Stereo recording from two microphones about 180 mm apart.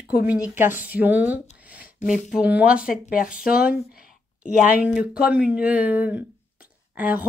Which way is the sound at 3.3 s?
55° left (ahead or behind).